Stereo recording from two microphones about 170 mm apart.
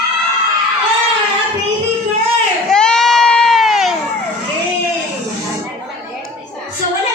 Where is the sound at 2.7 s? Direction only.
5° left (ahead or behind).